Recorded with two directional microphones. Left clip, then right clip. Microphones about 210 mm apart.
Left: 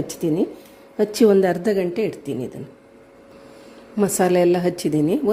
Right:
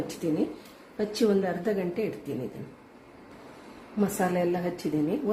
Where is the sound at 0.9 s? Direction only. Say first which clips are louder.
Left 10 dB; 45° left (ahead or behind).